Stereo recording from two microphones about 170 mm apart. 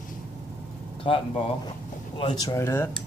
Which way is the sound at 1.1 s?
30° left (ahead or behind).